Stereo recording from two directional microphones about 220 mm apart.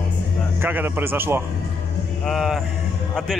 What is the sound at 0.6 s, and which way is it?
Speech, 10° right (ahead or behind).